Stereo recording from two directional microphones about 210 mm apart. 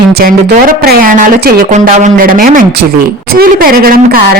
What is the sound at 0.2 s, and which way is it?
A woman's voice, 40° right (ahead or behind).